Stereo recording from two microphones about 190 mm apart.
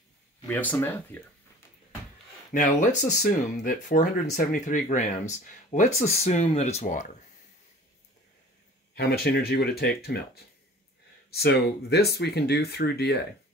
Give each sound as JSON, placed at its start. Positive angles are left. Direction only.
{"t": 0.5, "sound": "speech", "side_deg": 10}
{"t": 2.5, "sound": "speech", "side_deg": 40}
{"t": 8.9, "sound": "speech", "side_deg": 55}